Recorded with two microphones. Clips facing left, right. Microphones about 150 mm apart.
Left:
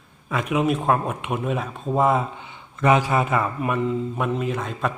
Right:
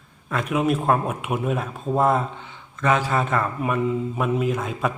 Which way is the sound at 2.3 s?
15° left (ahead or behind).